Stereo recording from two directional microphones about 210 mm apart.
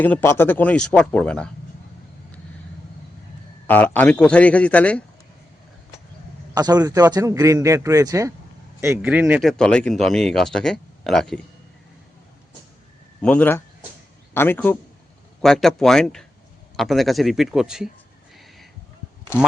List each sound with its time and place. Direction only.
0.0 s speech: 10° left (ahead or behind)
3.7 s speech: 10° left (ahead or behind)
6.5 s a man's voice: 20° right (ahead or behind); by 11.3 s centre (ahead or behind)
13.2 s speech: 5° left (ahead or behind)